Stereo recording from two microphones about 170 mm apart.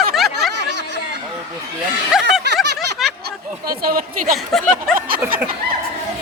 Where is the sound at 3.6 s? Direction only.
60° right (ahead or behind).